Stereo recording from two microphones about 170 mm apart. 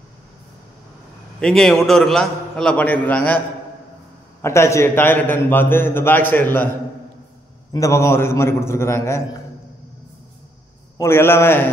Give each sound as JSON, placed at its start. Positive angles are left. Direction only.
{"t": 1.4, "sound": "a man's voice", "side_deg": 5}
{"t": 4.4, "sound": "a man's voice", "side_deg": 15}
{"t": 7.7, "sound": "a man's voice", "side_deg": 15}
{"t": 11.0, "sound": "a man's voice", "side_deg": 15}